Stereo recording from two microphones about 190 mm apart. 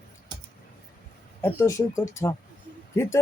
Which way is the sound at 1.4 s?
10° left (ahead or behind).